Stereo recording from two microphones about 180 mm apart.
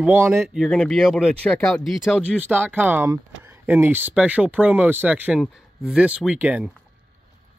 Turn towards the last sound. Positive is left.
turn(degrees=-5)  # may be behind; listen again after turning